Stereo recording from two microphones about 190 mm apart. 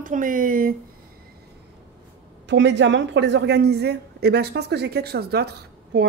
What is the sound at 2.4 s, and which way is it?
Speech, 70° right (ahead or behind).